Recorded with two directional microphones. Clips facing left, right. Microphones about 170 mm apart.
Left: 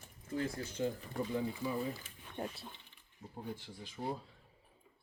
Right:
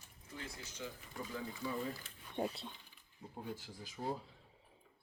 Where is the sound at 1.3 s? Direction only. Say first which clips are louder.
Left 3 dB; 15° left (ahead or behind).